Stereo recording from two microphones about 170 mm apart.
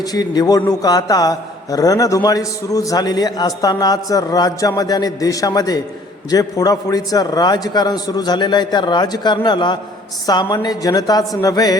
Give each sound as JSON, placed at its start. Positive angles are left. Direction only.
{"t": 0.1, "sound": "a man's voice", "side_deg": 20}